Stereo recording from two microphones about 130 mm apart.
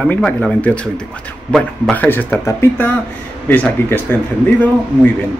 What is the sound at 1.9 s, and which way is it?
A man's voice, 15° left (ahead or behind).